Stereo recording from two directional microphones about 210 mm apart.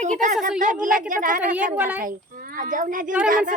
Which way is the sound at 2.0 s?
40° right (ahead or behind).